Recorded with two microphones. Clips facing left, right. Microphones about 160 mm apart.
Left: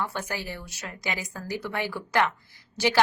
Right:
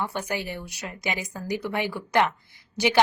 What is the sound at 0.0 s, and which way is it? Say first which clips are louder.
A woman's voice: right 2 dB; 15° right (ahead or behind).